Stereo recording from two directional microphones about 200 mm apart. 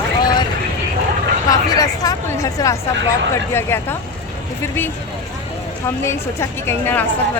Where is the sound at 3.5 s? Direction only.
10° left (ahead or behind).